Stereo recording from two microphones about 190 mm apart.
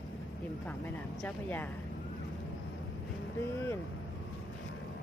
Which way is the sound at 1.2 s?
10° left (ahead or behind).